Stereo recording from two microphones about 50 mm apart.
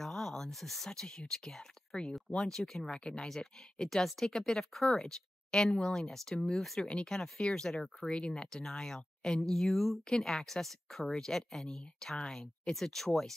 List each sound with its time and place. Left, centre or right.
0.0 s speech: centre
6.9 s speech: centre
12.8 s speech: centre